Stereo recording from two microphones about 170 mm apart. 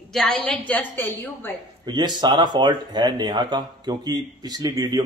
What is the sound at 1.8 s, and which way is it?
Speech, 25° right (ahead or behind).